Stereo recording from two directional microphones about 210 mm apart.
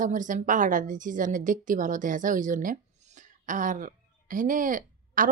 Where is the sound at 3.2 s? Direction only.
40° right (ahead or behind).